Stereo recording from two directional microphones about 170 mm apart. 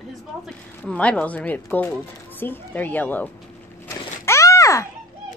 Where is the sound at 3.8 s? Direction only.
15° left (ahead or behind).